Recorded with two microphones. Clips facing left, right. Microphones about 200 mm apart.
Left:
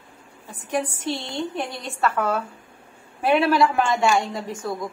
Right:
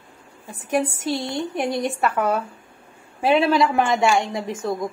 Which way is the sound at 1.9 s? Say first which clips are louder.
Right 2 dB; 15° right (ahead or behind).